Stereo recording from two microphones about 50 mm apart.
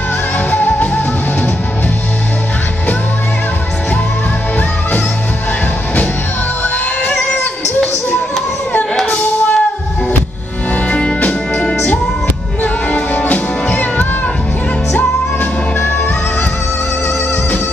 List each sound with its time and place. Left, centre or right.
0.5 s music: left
9.0 s music: left
10.7 s music: left